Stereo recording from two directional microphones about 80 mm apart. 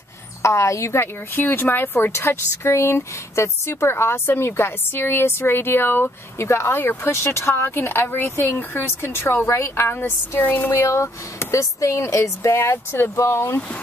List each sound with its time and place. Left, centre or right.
0.4 s a woman's voice: left
10.7 s speech: left